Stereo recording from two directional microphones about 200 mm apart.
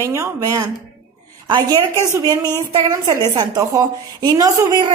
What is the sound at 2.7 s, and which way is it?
A woman's voice, 25° right (ahead or behind).